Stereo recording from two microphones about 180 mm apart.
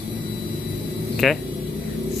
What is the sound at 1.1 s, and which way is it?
Speech, centre (ahead or behind).